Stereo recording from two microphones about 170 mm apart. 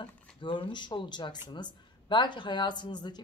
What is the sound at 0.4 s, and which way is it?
Speech, 30° left (ahead or behind).